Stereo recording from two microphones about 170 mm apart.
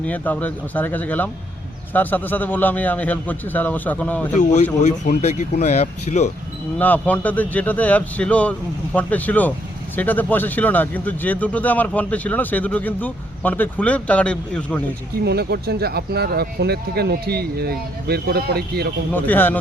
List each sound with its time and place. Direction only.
0.0 s speech: 10° left (ahead or behind)
4.4 s speech: 45° left (ahead or behind)
6.7 s speech: 10° left (ahead or behind)
15.2 s speech: 75° right (ahead or behind)
19.1 s speech: 10° left (ahead or behind)